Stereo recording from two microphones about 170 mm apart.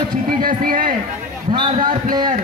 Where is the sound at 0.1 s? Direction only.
55° right (ahead or behind).